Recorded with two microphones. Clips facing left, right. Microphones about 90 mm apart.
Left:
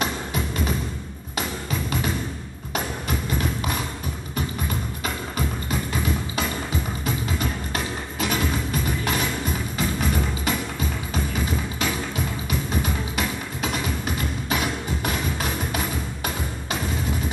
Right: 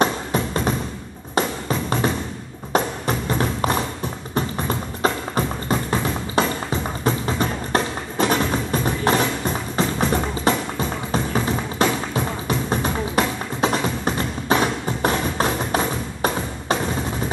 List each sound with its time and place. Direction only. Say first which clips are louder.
0.0 s music: right 6 dB; 40° right (ahead or behind)
3.3 s music: right 6 dB; 40° right (ahead or behind)